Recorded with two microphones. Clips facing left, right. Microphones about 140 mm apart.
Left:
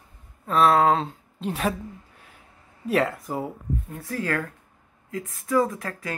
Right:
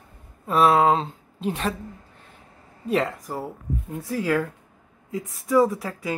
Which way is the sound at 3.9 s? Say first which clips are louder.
Right 5 dB; 15° right (ahead or behind).